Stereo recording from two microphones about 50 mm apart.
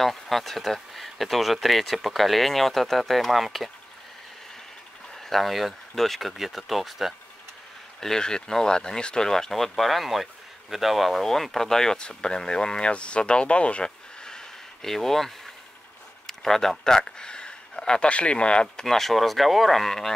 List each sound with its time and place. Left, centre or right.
0.0 s speech: centre
5.2 s speech: centre
8.0 s speech: centre